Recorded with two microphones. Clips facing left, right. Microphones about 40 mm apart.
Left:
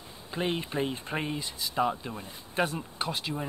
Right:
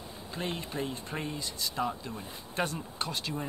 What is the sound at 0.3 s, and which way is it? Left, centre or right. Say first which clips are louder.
Speech: left 5 dB; left.